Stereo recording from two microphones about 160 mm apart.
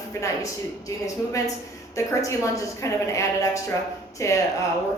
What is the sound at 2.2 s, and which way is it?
Speech, 20° left (ahead or behind).